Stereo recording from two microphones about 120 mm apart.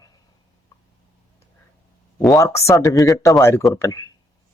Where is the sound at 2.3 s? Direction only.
25° left (ahead or behind).